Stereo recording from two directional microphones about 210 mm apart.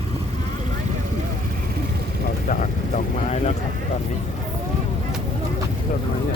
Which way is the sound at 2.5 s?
35° left (ahead or behind).